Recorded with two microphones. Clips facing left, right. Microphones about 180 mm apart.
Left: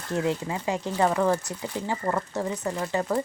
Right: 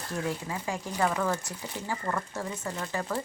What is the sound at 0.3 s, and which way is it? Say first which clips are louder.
Speech: left 5 dB; 25° left (ahead or behind).